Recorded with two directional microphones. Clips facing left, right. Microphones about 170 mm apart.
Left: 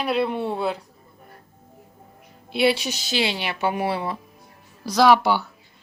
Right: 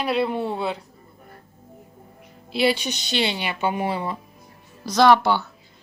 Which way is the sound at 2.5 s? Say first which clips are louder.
Left 1 dB; centre (ahead or behind).